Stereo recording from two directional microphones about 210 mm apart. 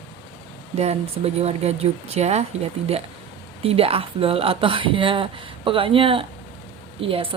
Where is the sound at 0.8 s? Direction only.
30° right (ahead or behind).